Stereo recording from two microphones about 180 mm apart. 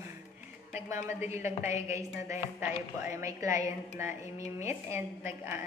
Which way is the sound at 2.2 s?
15° right (ahead or behind).